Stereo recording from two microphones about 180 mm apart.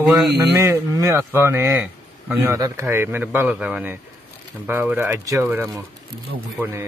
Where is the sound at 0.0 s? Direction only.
Centre (ahead or behind).